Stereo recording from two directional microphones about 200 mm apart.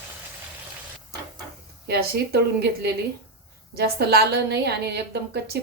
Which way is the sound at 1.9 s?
55° right (ahead or behind).